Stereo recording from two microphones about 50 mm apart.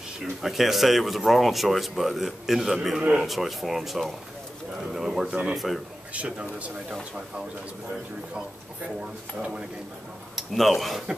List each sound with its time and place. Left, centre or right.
0.2 s speech: centre
6.1 s speech: right
10.3 s speech: centre